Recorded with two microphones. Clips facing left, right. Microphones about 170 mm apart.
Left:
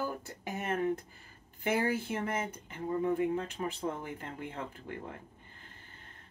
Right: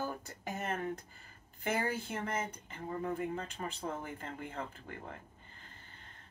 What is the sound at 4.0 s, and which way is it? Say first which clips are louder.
Speech: left 2 dB; 5° left (ahead or behind).